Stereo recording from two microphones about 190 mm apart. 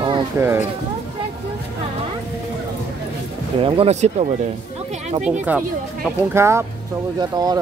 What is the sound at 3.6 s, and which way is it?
Speech, 30° right (ahead or behind).